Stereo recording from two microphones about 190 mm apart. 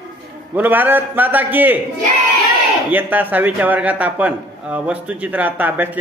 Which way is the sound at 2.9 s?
10° right (ahead or behind).